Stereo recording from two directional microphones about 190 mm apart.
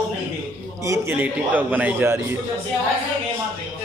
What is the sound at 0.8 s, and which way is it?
A man's voice, 15° right (ahead or behind).